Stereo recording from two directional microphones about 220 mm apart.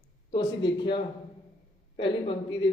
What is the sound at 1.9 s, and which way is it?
Speech, 25° left (ahead or behind).